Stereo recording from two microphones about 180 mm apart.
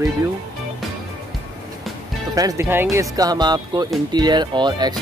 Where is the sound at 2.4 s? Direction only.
15° right (ahead or behind).